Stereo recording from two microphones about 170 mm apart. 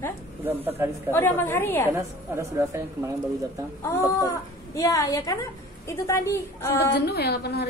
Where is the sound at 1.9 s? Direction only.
15° right (ahead or behind).